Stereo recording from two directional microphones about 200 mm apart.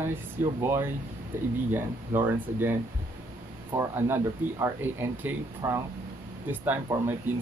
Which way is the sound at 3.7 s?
10° right (ahead or behind).